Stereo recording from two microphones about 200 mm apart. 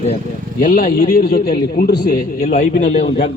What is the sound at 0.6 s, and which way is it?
A man's voice, 45° left (ahead or behind).